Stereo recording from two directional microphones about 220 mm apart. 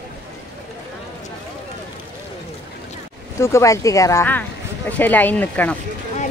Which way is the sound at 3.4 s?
15° left (ahead or behind).